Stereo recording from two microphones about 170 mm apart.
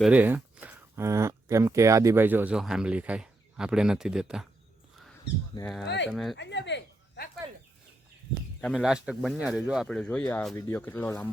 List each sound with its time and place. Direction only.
0.0 s speech: 10° right (ahead or behind)
5.8 s speech: 90° left
6.1 s speech: centre (ahead or behind)
6.3 s speech: 90° left
8.6 s speech: centre (ahead or behind)